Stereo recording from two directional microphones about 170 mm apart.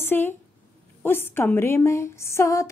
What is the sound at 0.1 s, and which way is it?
A woman's voice, 10° left (ahead or behind).